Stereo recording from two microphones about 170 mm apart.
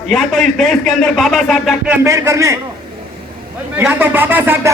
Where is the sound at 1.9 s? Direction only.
15° right (ahead or behind).